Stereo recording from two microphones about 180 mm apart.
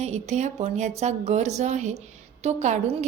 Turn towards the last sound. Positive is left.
turn(degrees=-40)  # may be behind; listen again after turning